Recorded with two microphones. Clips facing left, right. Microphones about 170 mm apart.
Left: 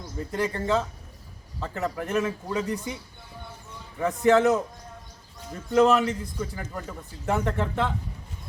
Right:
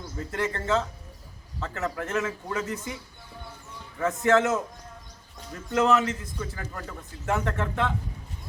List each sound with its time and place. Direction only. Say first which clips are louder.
0.0 s a man's voice: left 2 dB; 15° left (ahead or behind)
4.2 s a man's voice: left 3 dB; 15° left (ahead or behind)
5.7 s a man's voice: left 3 dB; 15° left (ahead or behind)